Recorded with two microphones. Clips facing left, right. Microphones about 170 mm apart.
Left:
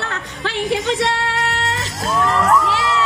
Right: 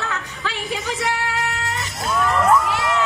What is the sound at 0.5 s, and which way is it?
Speech, 70° left (ahead or behind).